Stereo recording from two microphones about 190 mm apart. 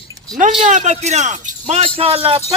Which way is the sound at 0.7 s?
40° right (ahead or behind).